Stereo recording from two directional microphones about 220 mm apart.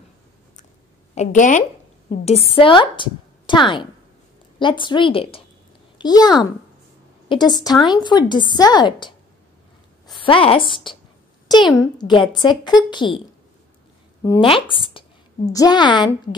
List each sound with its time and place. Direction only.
1.1 s a woman's voice: 30° left (ahead or behind)
10.1 s a woman's voice: 25° left (ahead or behind)
14.2 s a woman's voice: 15° left (ahead or behind)